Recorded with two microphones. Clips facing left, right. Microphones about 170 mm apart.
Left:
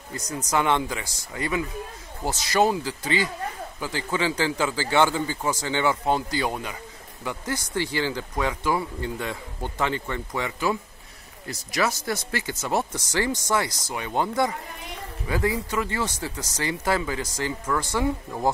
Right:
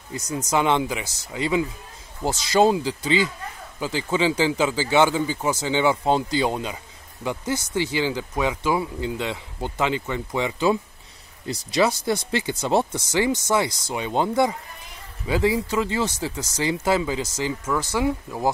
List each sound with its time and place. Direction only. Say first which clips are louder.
0.3 s speech: right 2 dB; 25° right (ahead or behind)
13.3 s speech: right 3 dB; 25° right (ahead or behind); by 18.5 s 10° right (ahead or behind)